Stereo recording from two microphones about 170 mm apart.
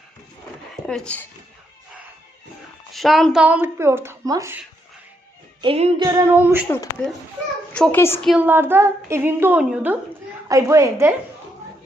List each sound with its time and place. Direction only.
0.9 s speech: 5° left (ahead or behind)
2.9 s speech: centre (ahead or behind)
3.4 s a woman's voice: 10° right (ahead or behind)
5.6 s music: 35° right (ahead or behind)
6.0 s female singing: 20° right (ahead or behind)
6.3 s a woman's voice: 10° right (ahead or behind)
7.7 s a child's voice: 10° left (ahead or behind)
8.4 s a woman's voice: 10° right (ahead or behind)